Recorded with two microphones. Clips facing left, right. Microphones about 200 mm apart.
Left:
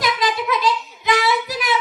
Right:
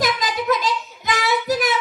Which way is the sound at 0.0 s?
45° right (ahead or behind).